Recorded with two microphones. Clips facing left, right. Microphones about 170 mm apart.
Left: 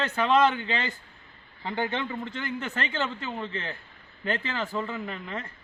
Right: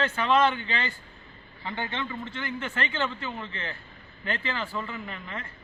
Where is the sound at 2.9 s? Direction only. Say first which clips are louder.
Even; 35° left (ahead or behind).